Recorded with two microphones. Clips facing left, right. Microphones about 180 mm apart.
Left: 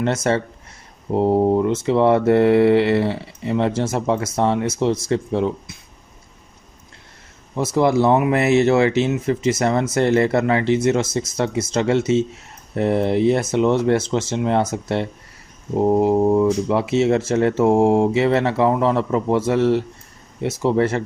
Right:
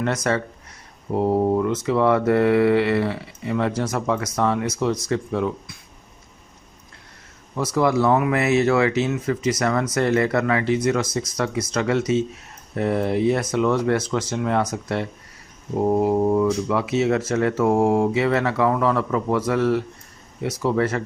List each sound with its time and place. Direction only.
0.0 s speech: 25° left (ahead or behind)
7.5 s speech: 25° left (ahead or behind)